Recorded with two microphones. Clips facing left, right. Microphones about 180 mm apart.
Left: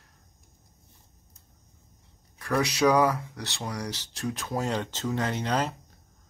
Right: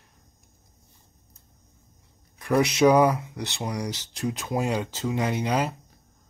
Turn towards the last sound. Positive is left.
turn(degrees=-10)  # may be behind; listen again after turning